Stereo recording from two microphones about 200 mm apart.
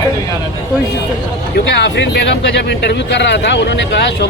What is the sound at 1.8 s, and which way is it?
Speech, 60° left (ahead or behind).